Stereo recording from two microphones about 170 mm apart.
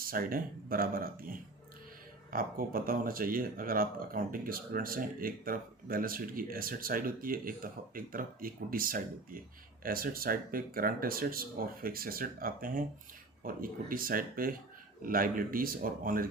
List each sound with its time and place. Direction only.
0.0 s speech: 60° right (ahead or behind)